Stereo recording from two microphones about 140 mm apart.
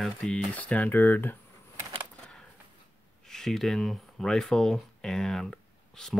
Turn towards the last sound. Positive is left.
turn(degrees=5)  # may be behind; listen again after turning